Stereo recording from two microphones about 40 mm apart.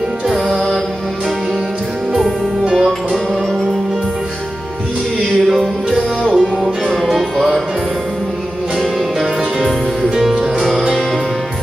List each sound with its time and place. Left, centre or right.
2.6 s music: right
6.3 s music: centre
10.0 s music: centre